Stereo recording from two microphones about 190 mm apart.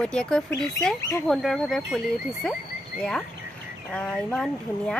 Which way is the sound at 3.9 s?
5° left (ahead or behind).